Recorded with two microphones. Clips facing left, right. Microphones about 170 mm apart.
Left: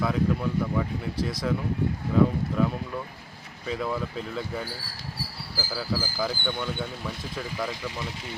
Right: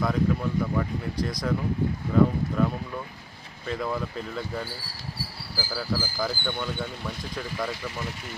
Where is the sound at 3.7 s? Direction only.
Centre (ahead or behind).